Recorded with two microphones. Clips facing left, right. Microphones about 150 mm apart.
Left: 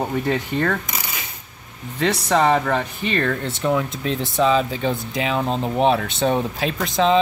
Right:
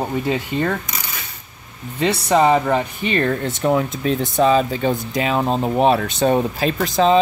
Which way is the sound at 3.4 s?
40° right (ahead or behind).